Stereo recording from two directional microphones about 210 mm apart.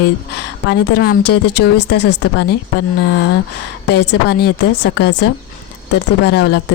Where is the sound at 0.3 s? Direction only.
55° left (ahead or behind).